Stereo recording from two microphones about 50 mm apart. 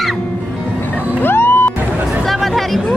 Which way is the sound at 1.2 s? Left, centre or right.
Left.